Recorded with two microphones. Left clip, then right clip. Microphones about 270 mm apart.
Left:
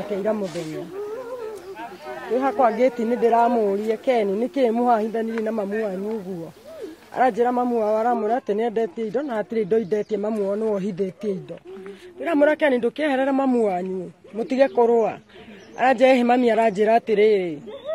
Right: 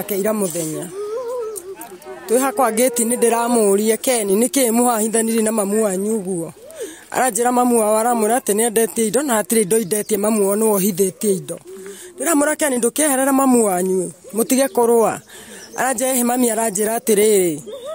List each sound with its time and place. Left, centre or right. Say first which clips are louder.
0.2 s speech: right 5 dB; right
2.3 s speech: right 3 dB; right
7.2 s speech: right 3 dB; right